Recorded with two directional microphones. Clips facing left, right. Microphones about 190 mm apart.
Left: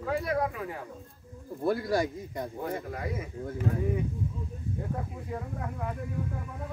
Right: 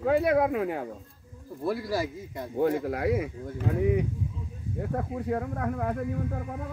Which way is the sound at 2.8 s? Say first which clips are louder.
Right 9 dB; 70° right (ahead or behind).